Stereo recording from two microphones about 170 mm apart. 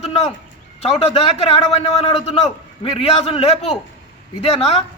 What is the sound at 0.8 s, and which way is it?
A man's voice, 35° left (ahead or behind).